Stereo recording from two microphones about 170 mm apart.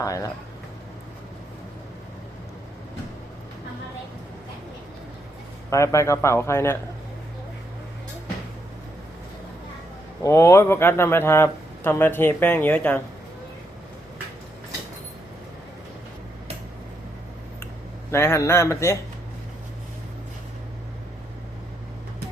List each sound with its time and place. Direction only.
0.0 s speech: 20° left (ahead or behind)
5.7 s a man's voice: 15° left (ahead or behind)
10.2 s a man's voice: 15° left (ahead or behind)
18.1 s a man's voice: 15° left (ahead or behind)